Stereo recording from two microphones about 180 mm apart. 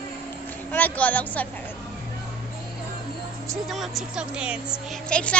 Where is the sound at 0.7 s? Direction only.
10° left (ahead or behind).